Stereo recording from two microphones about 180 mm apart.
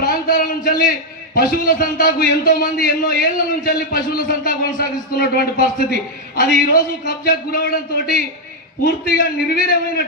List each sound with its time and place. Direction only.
0.0 s a man's voice: 55° left (ahead or behind)
8.8 s a man's voice: 55° left (ahead or behind)